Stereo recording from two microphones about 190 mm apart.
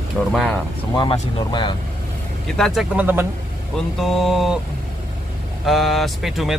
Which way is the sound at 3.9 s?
Centre (ahead or behind).